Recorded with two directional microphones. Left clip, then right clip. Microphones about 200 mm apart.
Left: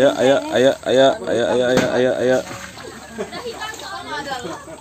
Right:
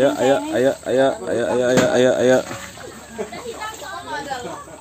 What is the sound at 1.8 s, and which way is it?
Speech, 20° right (ahead or behind).